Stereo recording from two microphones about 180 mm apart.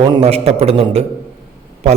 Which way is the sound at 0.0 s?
30° right (ahead or behind).